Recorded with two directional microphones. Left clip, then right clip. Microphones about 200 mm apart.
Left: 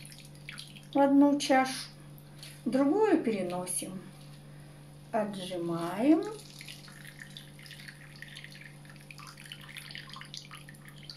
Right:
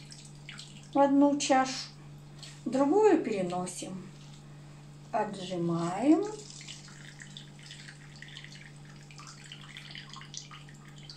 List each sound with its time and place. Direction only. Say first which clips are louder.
0.9 s a woman's voice: even; 20° left (ahead or behind)
5.1 s a woman's voice: right 1 dB; 15° left (ahead or behind)